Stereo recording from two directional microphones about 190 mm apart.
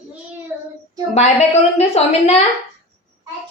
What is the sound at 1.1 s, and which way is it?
A woman's voice, 35° left (ahead or behind).